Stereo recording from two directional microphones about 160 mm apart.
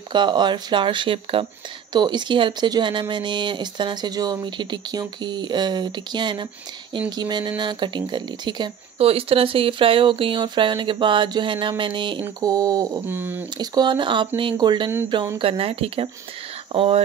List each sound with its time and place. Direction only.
0.1 s speech: 30° right (ahead or behind); by 13.4 s 15° right (ahead or behind)
13.6 s speech: 25° right (ahead or behind)